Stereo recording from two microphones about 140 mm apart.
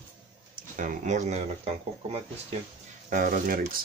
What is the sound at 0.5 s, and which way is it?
Speech, 70° right (ahead or behind).